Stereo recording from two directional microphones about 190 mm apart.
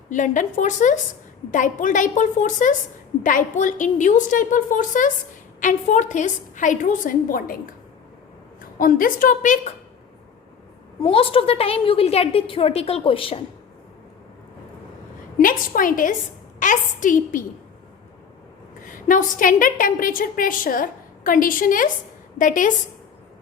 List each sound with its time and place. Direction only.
0.1 s a woman's voice: 40° left (ahead or behind)
8.8 s a woman's voice: 45° left (ahead or behind)
11.0 s a woman's voice: 30° left (ahead or behind)
15.4 s a woman's voice: 45° left (ahead or behind)
18.9 s a woman's voice: 45° left (ahead or behind)